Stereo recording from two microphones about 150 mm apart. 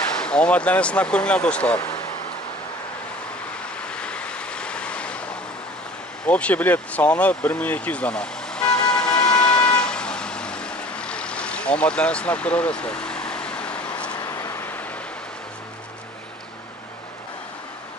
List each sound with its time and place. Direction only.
0.1 s speech: 5° left (ahead or behind)
3.8 s waves: 5° left (ahead or behind)
6.2 s vehicle: 10° left (ahead or behind)
14.1 s vehicle: 20° left (ahead or behind)